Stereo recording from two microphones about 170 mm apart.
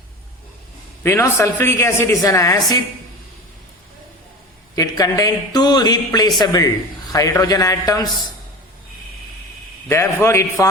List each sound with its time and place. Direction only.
1.0 s a woman's voice: 15° left (ahead or behind)
4.7 s a man's voice: 20° left (ahead or behind)
9.9 s a woman's voice: 15° left (ahead or behind)